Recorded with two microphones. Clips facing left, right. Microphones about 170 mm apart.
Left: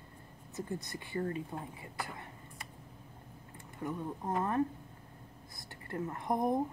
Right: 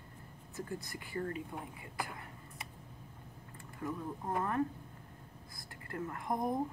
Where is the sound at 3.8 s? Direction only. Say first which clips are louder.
Left 2 dB; 15° left (ahead or behind).